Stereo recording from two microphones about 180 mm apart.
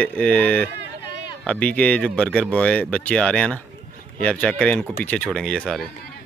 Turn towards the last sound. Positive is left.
turn(degrees=5)  # may be behind; listen again after turning